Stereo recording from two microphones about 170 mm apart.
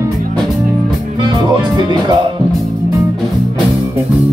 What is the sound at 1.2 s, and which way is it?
Speech, 25° right (ahead or behind).